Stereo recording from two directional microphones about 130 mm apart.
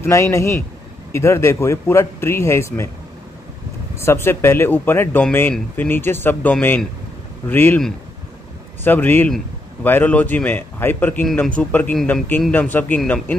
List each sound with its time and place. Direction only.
0.0 s speech: 20° left (ahead or behind)
4.0 s speech: 20° left (ahead or behind)
8.8 s speech: 15° left (ahead or behind)